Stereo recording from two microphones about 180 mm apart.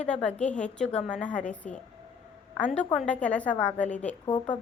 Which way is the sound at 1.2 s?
5° left (ahead or behind).